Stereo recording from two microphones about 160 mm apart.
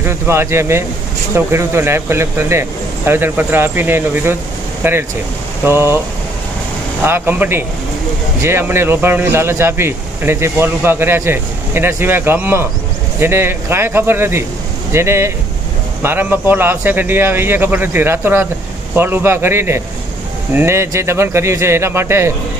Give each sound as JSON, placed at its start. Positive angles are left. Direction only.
{"t": 0.0, "sound": "speech", "side_deg": -15}
{"t": 7.0, "sound": "speech", "side_deg": -15}